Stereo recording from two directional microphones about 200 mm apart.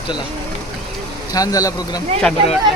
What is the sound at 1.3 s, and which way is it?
Speech, 15° left (ahead or behind).